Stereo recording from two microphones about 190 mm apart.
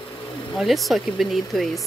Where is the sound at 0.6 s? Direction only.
Centre (ahead or behind).